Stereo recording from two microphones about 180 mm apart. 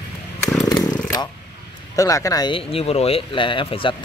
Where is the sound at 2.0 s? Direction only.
20° left (ahead or behind).